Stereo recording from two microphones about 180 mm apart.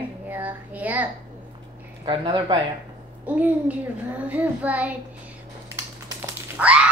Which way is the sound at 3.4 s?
10° right (ahead or behind).